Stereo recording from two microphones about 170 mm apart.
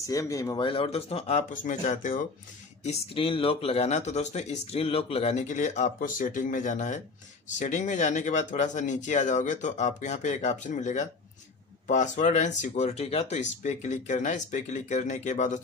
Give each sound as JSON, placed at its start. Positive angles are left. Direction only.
{"t": 0.0, "sound": "speech", "side_deg": 20}
{"t": 1.5, "sound": "speech", "side_deg": 50}
{"t": 2.8, "sound": "speech", "side_deg": 35}